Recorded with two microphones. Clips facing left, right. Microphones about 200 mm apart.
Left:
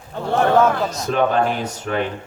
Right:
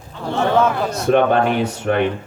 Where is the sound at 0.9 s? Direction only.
65° right (ahead or behind).